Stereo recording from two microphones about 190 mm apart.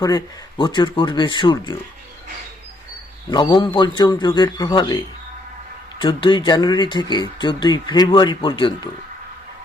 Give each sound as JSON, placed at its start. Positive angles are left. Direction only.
{"t": 0.0, "sound": "speech", "side_deg": 20}
{"t": 3.3, "sound": "speech", "side_deg": 25}
{"t": 6.0, "sound": "speech", "side_deg": 25}